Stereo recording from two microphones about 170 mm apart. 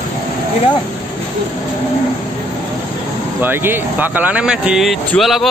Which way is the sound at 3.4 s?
10° right (ahead or behind).